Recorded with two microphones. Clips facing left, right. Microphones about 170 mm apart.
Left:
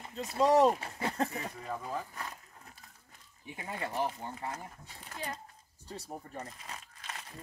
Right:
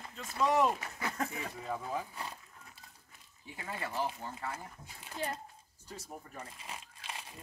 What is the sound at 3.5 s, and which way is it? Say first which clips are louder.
Speech: left 2 dB; 20° left (ahead or behind).